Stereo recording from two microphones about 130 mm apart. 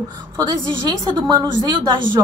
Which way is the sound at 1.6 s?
35° right (ahead or behind).